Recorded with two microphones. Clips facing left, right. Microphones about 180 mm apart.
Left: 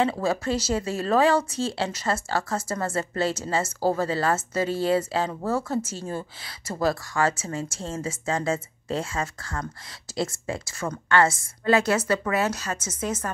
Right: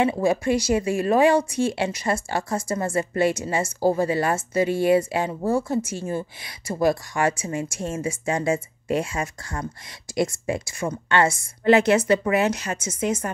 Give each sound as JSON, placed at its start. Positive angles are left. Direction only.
{"t": 0.0, "sound": "a woman's voice", "side_deg": -15}